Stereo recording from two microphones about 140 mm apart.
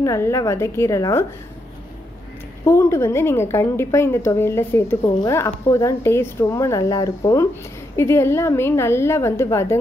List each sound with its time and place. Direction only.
0.0 s a woman's voice: 20° left (ahead or behind)
2.6 s a woman's voice: 20° left (ahead or behind)